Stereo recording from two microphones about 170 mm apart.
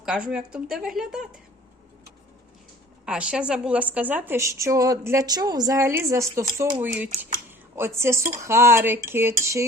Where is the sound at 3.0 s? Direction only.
5° right (ahead or behind).